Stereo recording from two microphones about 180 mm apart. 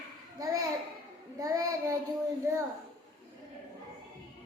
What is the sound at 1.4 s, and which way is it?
Child singing, 20° right (ahead or behind).